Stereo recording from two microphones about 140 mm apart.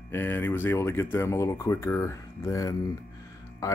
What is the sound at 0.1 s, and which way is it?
Speech, 15° left (ahead or behind).